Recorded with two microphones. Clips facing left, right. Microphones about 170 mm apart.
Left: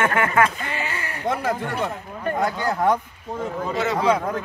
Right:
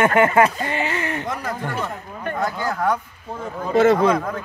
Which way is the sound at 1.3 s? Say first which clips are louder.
Left 3 dB; 25° left (ahead or behind).